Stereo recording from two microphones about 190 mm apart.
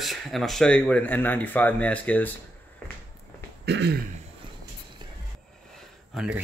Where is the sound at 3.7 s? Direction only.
65° right (ahead or behind).